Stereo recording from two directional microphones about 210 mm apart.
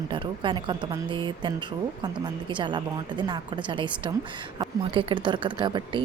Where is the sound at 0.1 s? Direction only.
20° right (ahead or behind).